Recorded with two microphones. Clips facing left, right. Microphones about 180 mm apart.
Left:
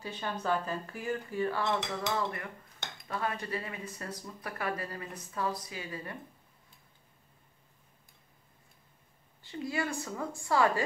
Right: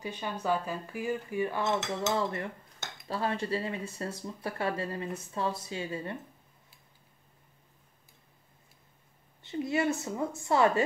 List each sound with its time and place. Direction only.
0.0 s speech: 15° right (ahead or behind)
9.4 s speech: 20° right (ahead or behind)